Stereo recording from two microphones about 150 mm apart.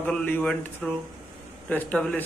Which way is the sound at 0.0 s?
10° left (ahead or behind).